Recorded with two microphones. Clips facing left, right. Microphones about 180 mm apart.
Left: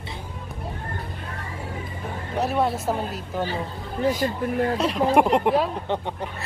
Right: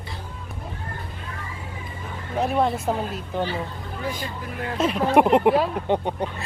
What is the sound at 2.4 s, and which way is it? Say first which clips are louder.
Speech: right 1 dB; 5° left (ahead or behind).